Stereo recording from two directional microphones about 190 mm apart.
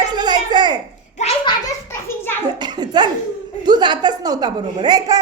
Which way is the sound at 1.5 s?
15° left (ahead or behind).